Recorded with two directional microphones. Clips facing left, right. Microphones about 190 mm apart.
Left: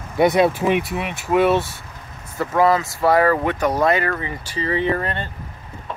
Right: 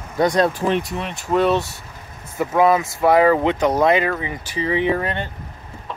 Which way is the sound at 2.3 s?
15° right (ahead or behind).